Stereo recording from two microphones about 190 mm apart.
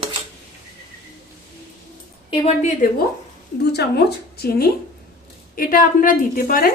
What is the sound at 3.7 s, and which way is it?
A woman's voice, 60° left (ahead or behind).